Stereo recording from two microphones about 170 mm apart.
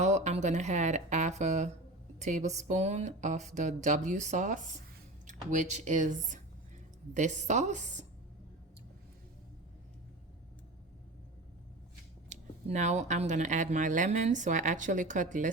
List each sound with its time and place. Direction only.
0.0 s speech: 45° right (ahead or behind)
12.3 s speech: 45° right (ahead or behind)